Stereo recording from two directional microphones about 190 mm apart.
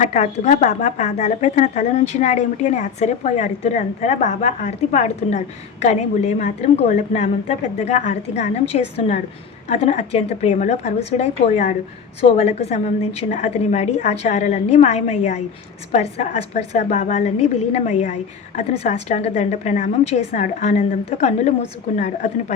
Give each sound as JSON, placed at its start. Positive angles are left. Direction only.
{"t": 0.0, "sound": "a woman's voice", "side_deg": 40}